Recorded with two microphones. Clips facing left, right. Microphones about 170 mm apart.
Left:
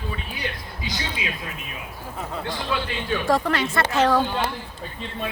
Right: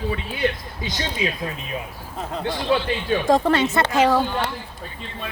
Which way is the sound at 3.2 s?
25° right (ahead or behind).